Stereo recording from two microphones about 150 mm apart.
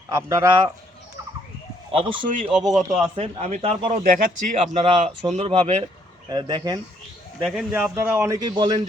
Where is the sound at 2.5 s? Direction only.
Centre (ahead or behind).